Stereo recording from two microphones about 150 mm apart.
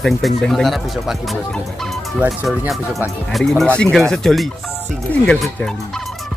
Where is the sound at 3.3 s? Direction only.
Centre (ahead or behind).